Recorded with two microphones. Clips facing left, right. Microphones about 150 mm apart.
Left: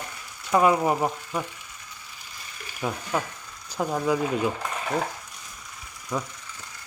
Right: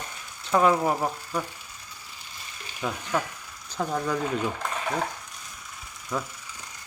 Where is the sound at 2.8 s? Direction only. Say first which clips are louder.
Left 1 dB; 15° left (ahead or behind).